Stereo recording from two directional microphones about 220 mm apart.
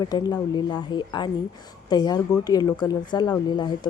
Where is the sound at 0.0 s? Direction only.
20° left (ahead or behind).